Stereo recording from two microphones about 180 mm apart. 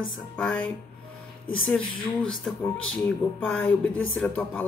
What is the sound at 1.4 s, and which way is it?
Speech, 30° left (ahead or behind).